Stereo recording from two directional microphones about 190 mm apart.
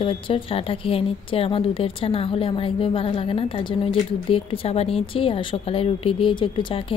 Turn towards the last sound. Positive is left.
turn(degrees=25)  # may be behind; listen again after turning